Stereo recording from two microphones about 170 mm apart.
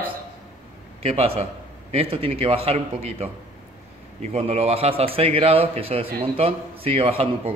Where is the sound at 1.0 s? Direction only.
35° right (ahead or behind).